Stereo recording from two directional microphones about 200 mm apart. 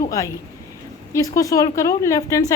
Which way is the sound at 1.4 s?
15° left (ahead or behind).